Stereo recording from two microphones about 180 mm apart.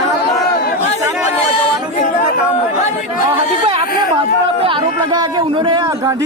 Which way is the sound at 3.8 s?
55° left (ahead or behind).